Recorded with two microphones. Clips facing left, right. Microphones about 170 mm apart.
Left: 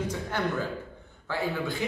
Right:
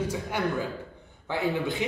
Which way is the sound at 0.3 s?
10° right (ahead or behind).